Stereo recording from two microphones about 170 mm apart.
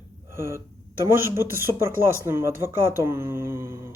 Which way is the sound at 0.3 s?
15° right (ahead or behind).